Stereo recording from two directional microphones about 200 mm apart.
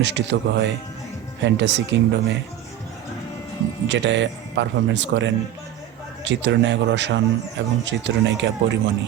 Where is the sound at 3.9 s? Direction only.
65° right (ahead or behind).